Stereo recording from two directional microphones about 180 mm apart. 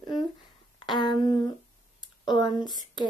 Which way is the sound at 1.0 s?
25° left (ahead or behind).